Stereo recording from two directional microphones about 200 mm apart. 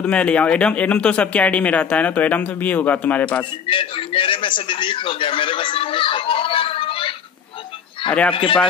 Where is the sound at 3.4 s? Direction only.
25° left (ahead or behind).